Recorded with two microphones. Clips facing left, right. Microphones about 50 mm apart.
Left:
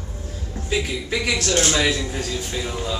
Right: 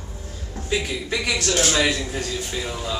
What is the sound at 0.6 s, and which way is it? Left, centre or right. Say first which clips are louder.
A man's voice: even; centre.